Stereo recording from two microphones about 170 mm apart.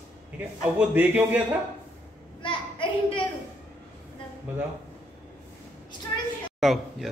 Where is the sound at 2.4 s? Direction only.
30° left (ahead or behind).